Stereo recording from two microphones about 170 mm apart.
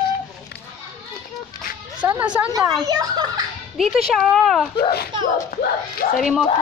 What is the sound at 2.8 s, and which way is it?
Speech, 20° right (ahead or behind).